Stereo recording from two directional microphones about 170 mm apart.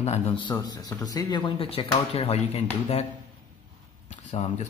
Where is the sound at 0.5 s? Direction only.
25° left (ahead or behind); by 3.1 s 40° left (ahead or behind).